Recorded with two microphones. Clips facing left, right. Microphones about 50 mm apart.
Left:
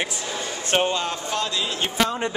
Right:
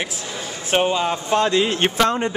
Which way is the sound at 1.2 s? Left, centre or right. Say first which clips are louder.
Right 8 dB; right.